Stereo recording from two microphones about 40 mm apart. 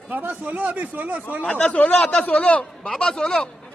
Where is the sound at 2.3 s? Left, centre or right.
Left; by 3.5 s centre.